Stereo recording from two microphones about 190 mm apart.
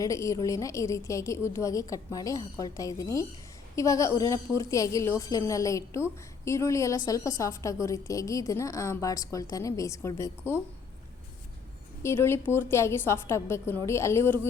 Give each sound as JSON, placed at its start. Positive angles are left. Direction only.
{"t": 0.0, "sound": "a woman's voice", "side_deg": 15}
{"t": 12.0, "sound": "a woman's voice", "side_deg": 15}